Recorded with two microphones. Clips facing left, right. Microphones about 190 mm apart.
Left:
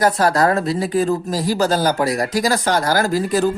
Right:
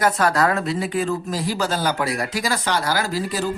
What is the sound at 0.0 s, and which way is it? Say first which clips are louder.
Speech: left 3 dB; 35° left (ahead or behind).